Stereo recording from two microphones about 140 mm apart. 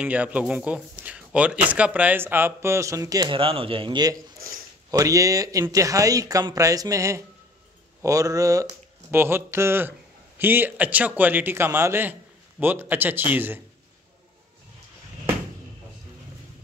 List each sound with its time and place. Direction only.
0.0 s speech: 10° right (ahead or behind); by 3.3 s 25° right (ahead or behind)
3.3 s speech: 40° right (ahead or behind); by 13.6 s 15° right (ahead or behind)